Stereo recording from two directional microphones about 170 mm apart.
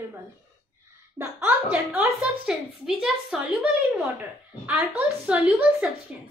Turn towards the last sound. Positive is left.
turn(degrees=-5)  # may be behind; listen again after turning